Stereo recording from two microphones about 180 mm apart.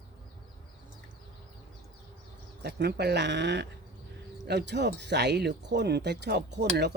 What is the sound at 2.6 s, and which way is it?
Speech, 65° right (ahead or behind).